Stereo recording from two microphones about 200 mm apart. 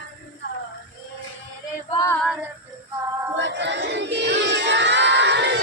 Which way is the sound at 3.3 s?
60° right (ahead or behind).